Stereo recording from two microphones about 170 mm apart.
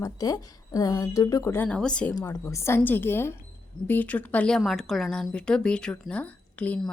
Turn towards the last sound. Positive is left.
turn(degrees=5)  # may be behind; listen again after turning